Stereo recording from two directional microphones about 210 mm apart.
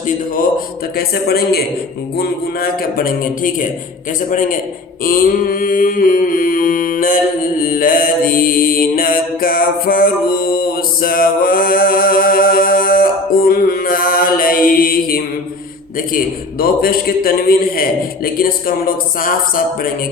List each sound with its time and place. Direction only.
0.9 s a man's voice: 50° left (ahead or behind)
4.3 s mantra: 40° left (ahead or behind)
16.1 s a man's voice: 45° left (ahead or behind)